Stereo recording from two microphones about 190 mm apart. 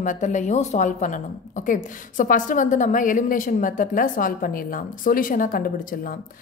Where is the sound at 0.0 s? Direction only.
40° left (ahead or behind).